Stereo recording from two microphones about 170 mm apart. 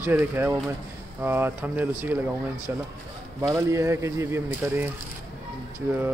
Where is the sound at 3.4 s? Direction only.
20° right (ahead or behind).